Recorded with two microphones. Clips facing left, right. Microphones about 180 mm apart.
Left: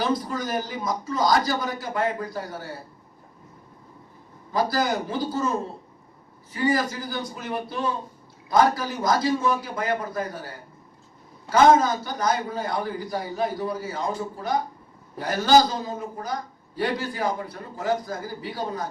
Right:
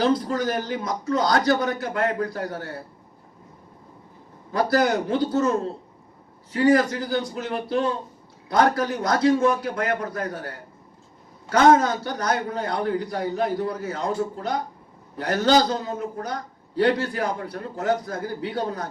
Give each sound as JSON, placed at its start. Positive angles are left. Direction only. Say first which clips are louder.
{"t": 0.0, "sound": "a man's voice", "louder": "right 4 dB", "side_deg": -65}
{"t": 4.5, "sound": "a man's voice", "louder": "right 3 dB", "side_deg": -65}
{"t": 11.5, "sound": "a man's voice", "louder": "even", "side_deg": -65}
{"t": 15.3, "sound": "a man's voice", "louder": "even", "side_deg": -70}